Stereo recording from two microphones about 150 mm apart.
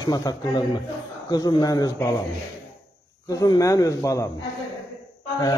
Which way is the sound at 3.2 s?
25° left (ahead or behind).